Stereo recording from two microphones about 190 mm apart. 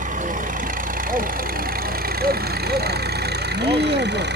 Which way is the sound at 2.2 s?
55° right (ahead or behind).